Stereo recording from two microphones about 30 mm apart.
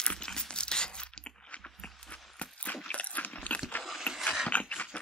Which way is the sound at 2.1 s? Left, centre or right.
Left.